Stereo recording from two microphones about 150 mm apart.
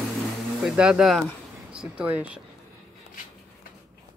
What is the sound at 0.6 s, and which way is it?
Speech, 5° right (ahead or behind).